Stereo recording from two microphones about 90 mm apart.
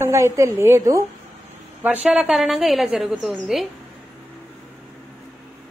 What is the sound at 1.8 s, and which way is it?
A woman's voice, 15° right (ahead or behind).